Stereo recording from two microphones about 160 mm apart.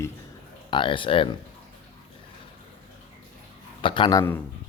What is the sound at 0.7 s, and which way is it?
Speech, 30° left (ahead or behind).